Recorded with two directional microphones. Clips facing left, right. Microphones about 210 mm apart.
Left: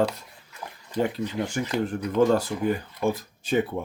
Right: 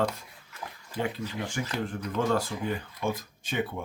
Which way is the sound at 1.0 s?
40° left (ahead or behind).